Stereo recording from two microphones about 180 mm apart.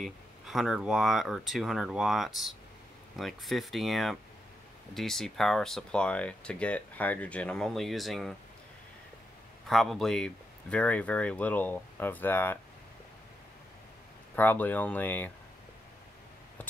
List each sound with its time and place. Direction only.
0.0 s speech: centre (ahead or behind)
9.7 s speech: centre (ahead or behind)
14.3 s speech: 10° left (ahead or behind)